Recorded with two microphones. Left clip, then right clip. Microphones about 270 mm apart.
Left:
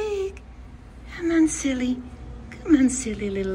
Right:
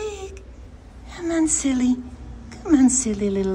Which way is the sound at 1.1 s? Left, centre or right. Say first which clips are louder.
Left 1 dB; centre.